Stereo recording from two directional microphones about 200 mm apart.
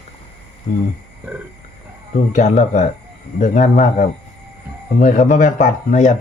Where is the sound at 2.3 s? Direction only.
40° left (ahead or behind).